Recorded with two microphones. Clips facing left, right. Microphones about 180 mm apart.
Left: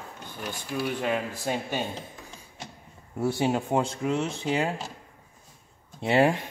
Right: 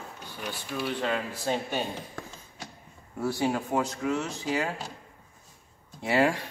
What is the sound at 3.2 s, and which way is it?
Speech, 25° left (ahead or behind).